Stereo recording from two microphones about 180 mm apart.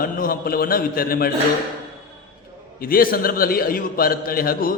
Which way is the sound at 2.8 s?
55° left (ahead or behind).